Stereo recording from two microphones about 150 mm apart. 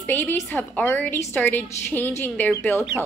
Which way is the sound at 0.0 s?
10° left (ahead or behind).